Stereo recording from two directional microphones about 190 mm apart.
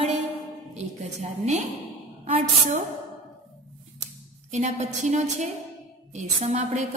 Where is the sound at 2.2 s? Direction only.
35° right (ahead or behind).